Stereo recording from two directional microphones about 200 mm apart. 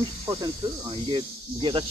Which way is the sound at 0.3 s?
20° right (ahead or behind).